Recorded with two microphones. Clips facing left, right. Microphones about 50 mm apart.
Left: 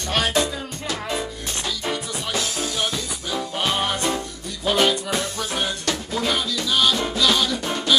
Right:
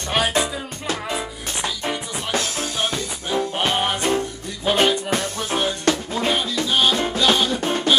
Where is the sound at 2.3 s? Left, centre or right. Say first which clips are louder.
Right 2 dB; right.